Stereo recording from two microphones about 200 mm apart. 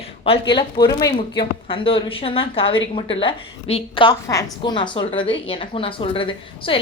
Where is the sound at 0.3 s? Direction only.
25° left (ahead or behind).